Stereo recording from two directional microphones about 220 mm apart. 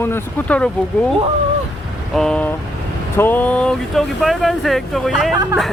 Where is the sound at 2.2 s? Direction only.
5° left (ahead or behind).